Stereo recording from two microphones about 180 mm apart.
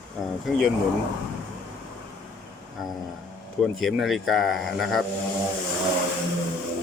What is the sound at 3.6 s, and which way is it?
Speech, centre (ahead or behind).